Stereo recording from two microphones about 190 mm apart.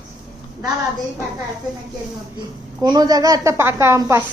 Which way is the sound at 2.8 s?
20° right (ahead or behind).